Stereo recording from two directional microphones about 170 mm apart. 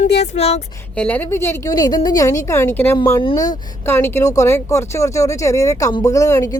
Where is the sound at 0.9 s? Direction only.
10° left (ahead or behind).